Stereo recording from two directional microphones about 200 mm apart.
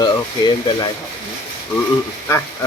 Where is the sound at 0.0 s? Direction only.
20° left (ahead or behind).